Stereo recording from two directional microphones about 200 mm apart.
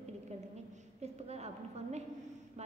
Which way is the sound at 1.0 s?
35° right (ahead or behind).